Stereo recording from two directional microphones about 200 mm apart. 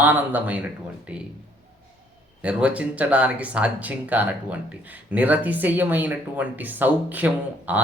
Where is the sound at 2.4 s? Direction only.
5° right (ahead or behind).